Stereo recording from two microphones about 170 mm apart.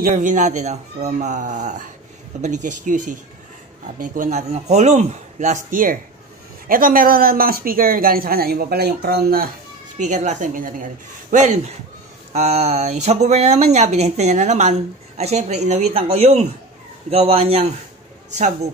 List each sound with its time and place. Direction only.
0.0 s a man's voice: 50° right (ahead or behind)
9.9 s a man's voice: 45° right (ahead or behind)